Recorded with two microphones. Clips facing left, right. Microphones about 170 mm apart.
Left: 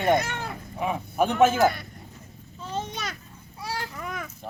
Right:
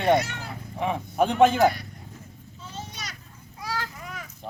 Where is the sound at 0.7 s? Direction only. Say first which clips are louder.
Right 1 dB; 5° left (ahead or behind).